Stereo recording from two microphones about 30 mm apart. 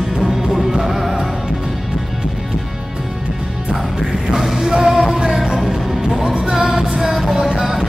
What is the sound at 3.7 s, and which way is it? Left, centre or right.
Music, centre.